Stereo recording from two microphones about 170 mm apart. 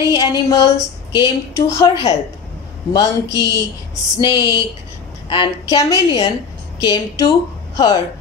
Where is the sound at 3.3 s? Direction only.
90° left.